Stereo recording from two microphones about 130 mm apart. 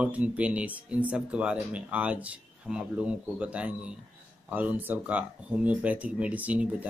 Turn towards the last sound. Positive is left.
turn(degrees=-10)  # may be behind; listen again after turning